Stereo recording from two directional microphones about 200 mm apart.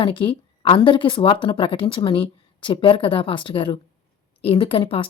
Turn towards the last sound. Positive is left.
turn(degrees=30)  # may be behind; listen again after turning